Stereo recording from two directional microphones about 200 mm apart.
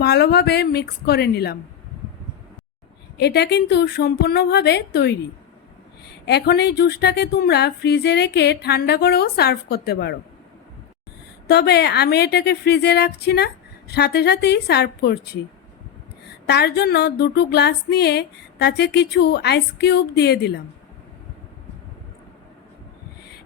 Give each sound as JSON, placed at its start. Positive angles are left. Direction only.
{"t": 0.0, "sound": "speech", "side_deg": 55}
{"t": 3.2, "sound": "speech", "side_deg": 55}
{"t": 6.2, "sound": "speech", "side_deg": 55}
{"t": 11.4, "sound": "speech", "side_deg": 55}
{"t": 16.5, "sound": "speech", "side_deg": 55}